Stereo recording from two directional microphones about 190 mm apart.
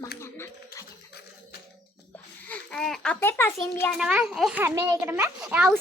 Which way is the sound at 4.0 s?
5° right (ahead or behind).